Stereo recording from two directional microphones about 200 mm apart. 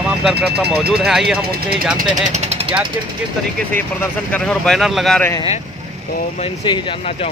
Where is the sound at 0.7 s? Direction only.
5° right (ahead or behind).